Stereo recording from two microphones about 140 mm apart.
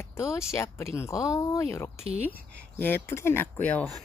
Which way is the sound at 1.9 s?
50° right (ahead or behind).